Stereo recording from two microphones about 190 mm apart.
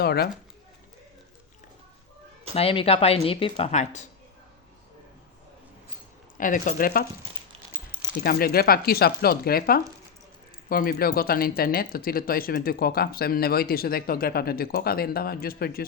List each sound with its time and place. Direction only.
0.0 s speech: 55° left (ahead or behind)
2.6 s speech: 30° left (ahead or behind)
6.3 s speech: 45° left (ahead or behind)
8.2 s speech: 55° left (ahead or behind)